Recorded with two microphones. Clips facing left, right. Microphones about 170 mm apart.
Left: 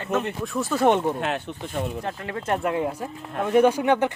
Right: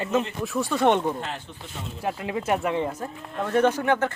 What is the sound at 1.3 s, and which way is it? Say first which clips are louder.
Speech: left 8 dB; 60° left (ahead or behind).